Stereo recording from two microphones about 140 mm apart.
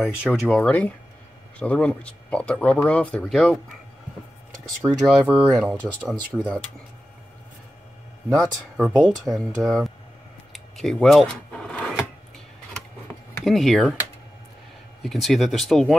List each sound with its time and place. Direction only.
0.0 s speech: 5° right (ahead or behind)
0.7 s speech: 10° left (ahead or behind)
5.0 s speech: centre (ahead or behind)
8.3 s speech: 5° right (ahead or behind)
10.5 s a sound: centre (ahead or behind)
13.4 s speech: centre (ahead or behind)
15.0 s speech: centre (ahead or behind)